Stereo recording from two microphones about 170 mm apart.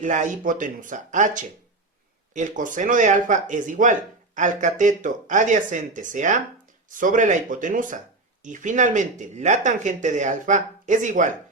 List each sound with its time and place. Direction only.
0.0 s speech: 50° right (ahead or behind)